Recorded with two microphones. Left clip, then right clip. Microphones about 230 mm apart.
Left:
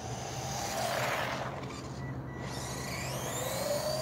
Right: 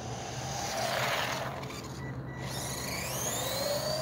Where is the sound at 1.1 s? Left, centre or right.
Right; by 4.0 s centre.